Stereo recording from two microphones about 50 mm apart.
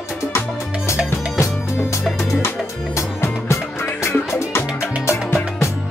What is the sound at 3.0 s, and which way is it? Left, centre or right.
Music, left.